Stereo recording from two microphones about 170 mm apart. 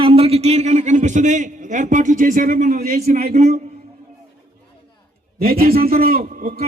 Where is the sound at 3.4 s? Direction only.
40° right (ahead or behind).